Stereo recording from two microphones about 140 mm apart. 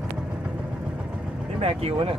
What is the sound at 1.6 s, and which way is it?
Speech, 45° right (ahead or behind).